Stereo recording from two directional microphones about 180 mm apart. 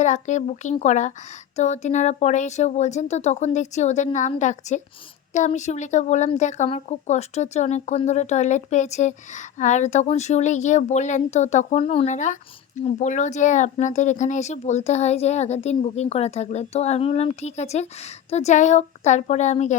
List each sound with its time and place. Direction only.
0.0 s a woman's voice: 40° left (ahead or behind)